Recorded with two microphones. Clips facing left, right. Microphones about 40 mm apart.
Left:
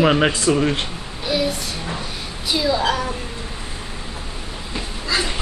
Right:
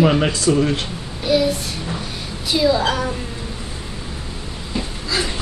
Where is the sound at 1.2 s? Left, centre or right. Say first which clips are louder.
Right 4 dB; centre.